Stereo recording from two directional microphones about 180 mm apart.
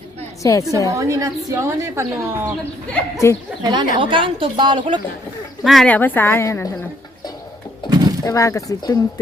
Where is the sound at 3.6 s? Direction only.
25° right (ahead or behind).